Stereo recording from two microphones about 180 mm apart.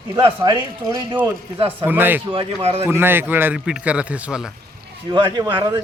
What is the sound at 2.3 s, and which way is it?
Speech, 35° right (ahead or behind).